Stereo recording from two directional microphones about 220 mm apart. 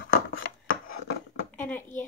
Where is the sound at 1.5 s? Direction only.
10° left (ahead or behind).